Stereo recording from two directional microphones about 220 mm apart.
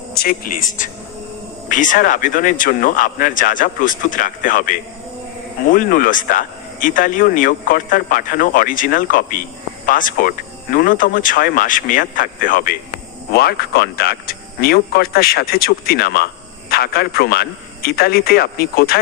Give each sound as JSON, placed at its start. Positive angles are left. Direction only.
{"t": 0.1, "sound": "speech", "side_deg": 45}